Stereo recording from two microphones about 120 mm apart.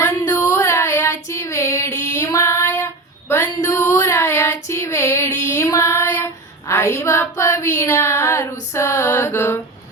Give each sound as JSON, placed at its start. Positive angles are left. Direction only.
{"t": 0.0, "sound": "female singing", "side_deg": 15}